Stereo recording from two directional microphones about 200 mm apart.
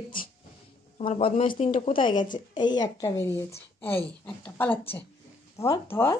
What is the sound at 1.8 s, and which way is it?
A woman's voice, 25° left (ahead or behind).